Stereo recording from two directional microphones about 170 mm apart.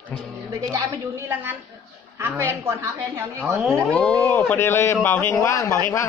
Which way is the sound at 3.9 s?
5° left (ahead or behind).